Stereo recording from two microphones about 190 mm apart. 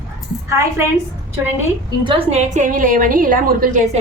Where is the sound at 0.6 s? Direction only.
15° right (ahead or behind).